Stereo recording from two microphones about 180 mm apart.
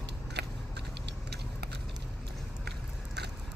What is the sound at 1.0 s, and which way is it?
Vehicle, 65° right (ahead or behind).